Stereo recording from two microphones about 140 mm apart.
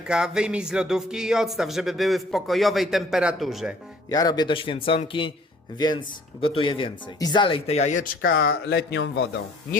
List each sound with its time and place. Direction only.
0.1 s speech: 5° right (ahead or behind)
4.1 s speech: 30° left (ahead or behind); by 8.6 s 90° left